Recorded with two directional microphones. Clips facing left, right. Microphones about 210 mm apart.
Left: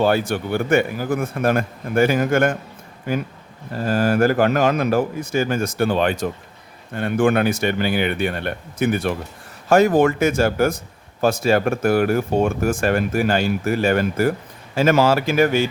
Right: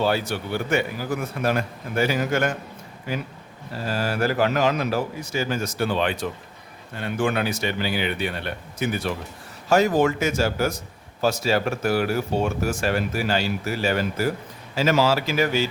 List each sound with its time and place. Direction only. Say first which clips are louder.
0.0 s speech: left 5 dB; 50° left (ahead or behind)